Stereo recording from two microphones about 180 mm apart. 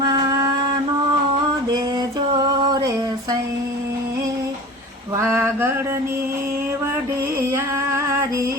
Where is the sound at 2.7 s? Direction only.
20° right (ahead or behind).